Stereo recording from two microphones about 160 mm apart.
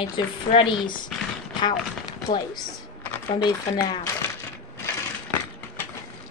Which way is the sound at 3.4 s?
25° left (ahead or behind).